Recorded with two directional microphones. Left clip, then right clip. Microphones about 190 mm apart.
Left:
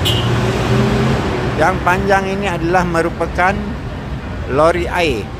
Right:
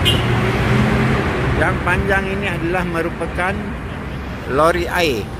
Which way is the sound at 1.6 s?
15° left (ahead or behind).